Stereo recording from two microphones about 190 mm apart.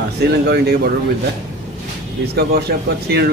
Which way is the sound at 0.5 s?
60° right (ahead or behind).